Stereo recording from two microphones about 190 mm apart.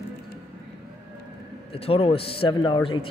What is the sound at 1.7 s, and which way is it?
Speech, 30° left (ahead or behind).